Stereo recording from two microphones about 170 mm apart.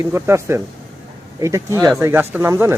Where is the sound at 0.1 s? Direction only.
15° right (ahead or behind).